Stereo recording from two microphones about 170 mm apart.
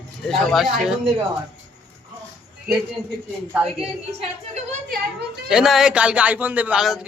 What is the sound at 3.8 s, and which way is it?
A woman's voice, 40° right (ahead or behind).